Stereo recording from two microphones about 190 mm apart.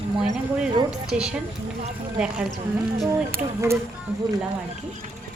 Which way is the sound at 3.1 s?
15° right (ahead or behind).